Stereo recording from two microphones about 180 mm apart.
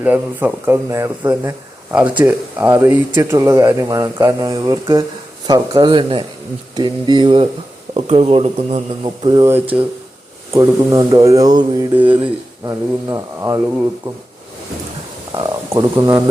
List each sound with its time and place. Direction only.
0.0 s speech: 10° right (ahead or behind); by 9.5 s 25° right (ahead or behind)
9.5 s speech: 10° right (ahead or behind)
11.9 s speech: 10° right (ahead or behind)
15.4 s speech: 20° right (ahead or behind)